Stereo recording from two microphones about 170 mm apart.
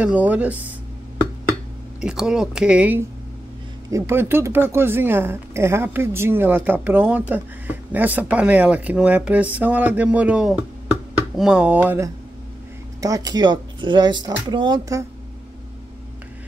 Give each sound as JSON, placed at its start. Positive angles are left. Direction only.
{"t": 0.0, "sound": "a woman's voice", "side_deg": -10}
{"t": 2.0, "sound": "a woman's voice", "side_deg": -5}
{"t": 13.0, "sound": "speech", "side_deg": -20}